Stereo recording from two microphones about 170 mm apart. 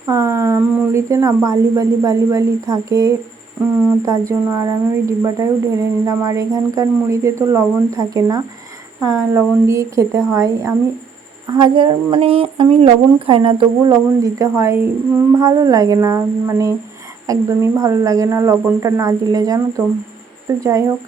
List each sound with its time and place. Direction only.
0.1 s speech: 20° right (ahead or behind)
11.5 s speech: 30° right (ahead or behind)